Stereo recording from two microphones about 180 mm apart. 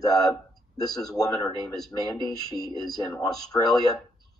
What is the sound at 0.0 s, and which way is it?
A man's voice, 20° left (ahead or behind).